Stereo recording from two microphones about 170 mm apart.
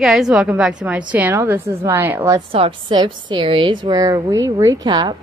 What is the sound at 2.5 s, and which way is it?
A woman's voice, 30° right (ahead or behind).